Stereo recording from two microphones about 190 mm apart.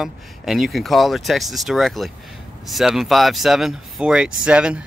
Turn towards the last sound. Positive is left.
turn(degrees=-5)  # may be behind; listen again after turning